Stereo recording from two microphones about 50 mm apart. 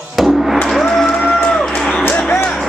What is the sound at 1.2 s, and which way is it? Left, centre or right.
Music, centre.